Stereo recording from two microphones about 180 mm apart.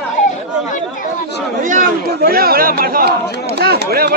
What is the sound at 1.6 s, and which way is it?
Chatter, 45° right (ahead or behind).